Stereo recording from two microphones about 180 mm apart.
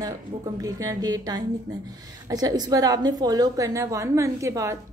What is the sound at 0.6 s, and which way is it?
A woman's voice, 20° right (ahead or behind).